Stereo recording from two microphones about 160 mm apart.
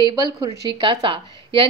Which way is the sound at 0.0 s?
25° right (ahead or behind).